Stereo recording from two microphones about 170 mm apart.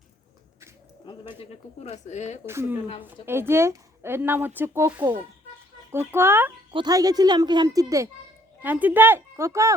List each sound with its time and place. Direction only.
1.1 s speech: 30° left (ahead or behind)
1.8 s speech: 40° left (ahead or behind)
2.5 s speech: 15° right (ahead or behind)